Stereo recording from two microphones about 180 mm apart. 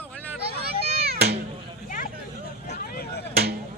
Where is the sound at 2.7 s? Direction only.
60° left (ahead or behind).